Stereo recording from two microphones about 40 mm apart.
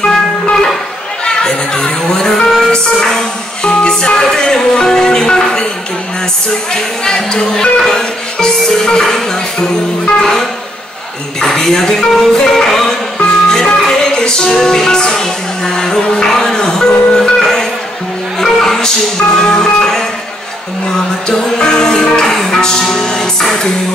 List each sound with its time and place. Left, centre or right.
0.0 s music: centre
1.2 s speech: centre
6.7 s speech: centre
13.2 s music: centre
16.2 s speech: centre
21.3 s speech: centre